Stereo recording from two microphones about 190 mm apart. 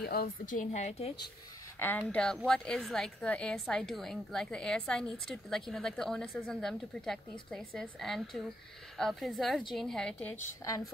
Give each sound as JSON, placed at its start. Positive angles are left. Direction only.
{"t": 0.0, "sound": "a woman's voice", "side_deg": 55}
{"t": 1.8, "sound": "a woman's voice", "side_deg": 10}
{"t": 10.6, "sound": "a woman's voice", "side_deg": 15}